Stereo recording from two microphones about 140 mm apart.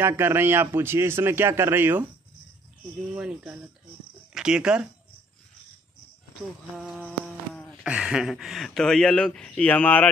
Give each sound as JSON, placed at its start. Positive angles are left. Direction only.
{"t": 0.0, "sound": "a man's voice", "side_deg": -15}
{"t": 3.2, "sound": "a man's voice", "side_deg": -5}
{"t": 7.0, "sound": "a sound", "side_deg": 10}
{"t": 7.8, "sound": "speech", "side_deg": -5}